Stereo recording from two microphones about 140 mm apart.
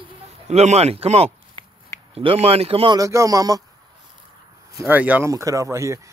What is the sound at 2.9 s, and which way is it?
Speech, 25° right (ahead or behind).